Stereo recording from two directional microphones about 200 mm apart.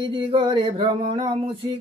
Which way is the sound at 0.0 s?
25° right (ahead or behind).